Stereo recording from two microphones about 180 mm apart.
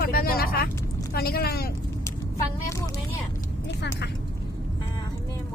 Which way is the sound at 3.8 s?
70° left (ahead or behind).